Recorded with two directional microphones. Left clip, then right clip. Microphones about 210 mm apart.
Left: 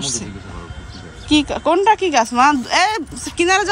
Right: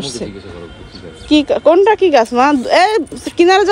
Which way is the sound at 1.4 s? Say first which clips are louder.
Right 6 dB; 20° left (ahead or behind).